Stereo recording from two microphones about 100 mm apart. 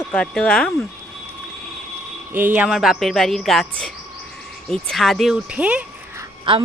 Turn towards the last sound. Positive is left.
turn(degrees=-60)  # may be behind; listen again after turning